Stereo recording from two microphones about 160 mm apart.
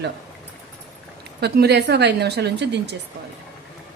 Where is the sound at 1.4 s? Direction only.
90° right.